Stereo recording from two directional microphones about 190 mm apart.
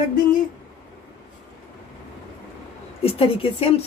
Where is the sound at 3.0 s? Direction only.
30° left (ahead or behind).